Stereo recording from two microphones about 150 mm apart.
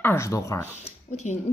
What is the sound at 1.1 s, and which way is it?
Speech, 50° left (ahead or behind).